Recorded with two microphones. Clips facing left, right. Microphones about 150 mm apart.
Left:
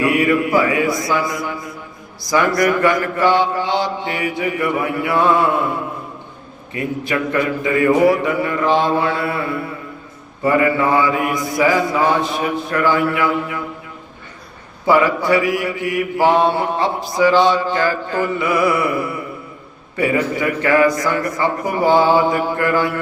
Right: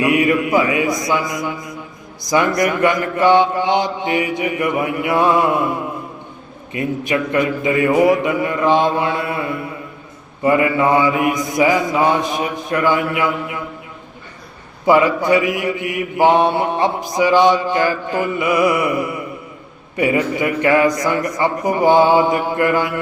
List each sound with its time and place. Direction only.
0.0 s mantra: 20° right (ahead or behind)
6.7 s mantra: 20° right (ahead or behind)
14.8 s mantra: 20° right (ahead or behind)
20.0 s mantra: 20° right (ahead or behind)